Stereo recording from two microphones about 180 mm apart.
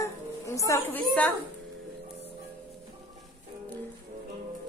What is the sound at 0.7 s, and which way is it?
Speech, 10° left (ahead or behind).